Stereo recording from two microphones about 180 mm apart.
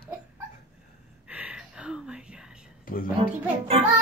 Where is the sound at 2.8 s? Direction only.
50° left (ahead or behind).